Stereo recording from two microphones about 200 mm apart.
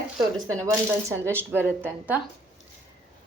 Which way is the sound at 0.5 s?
15° right (ahead or behind).